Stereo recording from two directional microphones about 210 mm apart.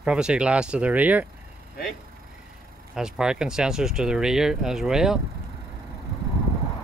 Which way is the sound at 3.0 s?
5° right (ahead or behind).